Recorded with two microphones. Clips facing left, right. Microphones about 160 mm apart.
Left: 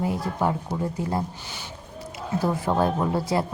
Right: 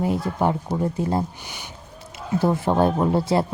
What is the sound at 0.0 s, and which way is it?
Speech, 25° right (ahead or behind).